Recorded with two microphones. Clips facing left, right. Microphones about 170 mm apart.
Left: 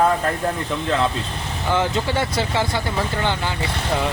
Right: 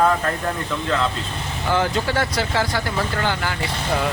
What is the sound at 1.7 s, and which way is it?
Speech, 20° left (ahead or behind).